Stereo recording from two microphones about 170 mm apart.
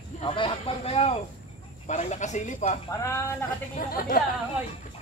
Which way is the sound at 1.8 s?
45° left (ahead or behind).